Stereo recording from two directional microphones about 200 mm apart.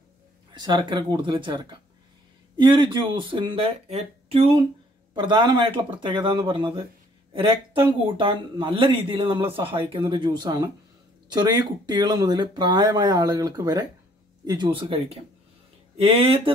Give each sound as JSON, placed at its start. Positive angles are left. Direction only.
{"t": 0.6, "sound": "speech", "side_deg": -20}